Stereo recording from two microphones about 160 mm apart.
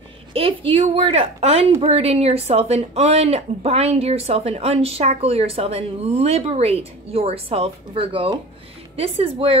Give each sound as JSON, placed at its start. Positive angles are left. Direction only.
{"t": 0.3, "sound": "a woman's voice", "side_deg": -35}